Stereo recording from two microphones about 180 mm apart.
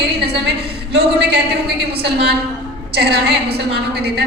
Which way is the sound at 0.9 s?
65° right (ahead or behind).